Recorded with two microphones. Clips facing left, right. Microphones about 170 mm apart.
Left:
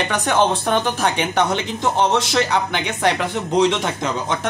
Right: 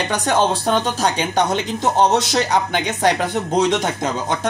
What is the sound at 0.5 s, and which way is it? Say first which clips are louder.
Speech: even; 35° right (ahead or behind).